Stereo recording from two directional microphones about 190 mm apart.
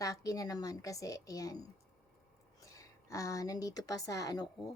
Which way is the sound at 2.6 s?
15° left (ahead or behind).